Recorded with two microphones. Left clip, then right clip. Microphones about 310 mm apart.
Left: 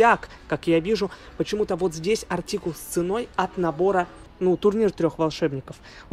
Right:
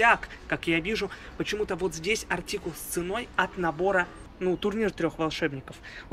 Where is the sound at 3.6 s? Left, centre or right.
Right.